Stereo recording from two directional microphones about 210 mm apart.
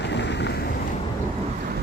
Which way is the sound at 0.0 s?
55° left (ahead or behind).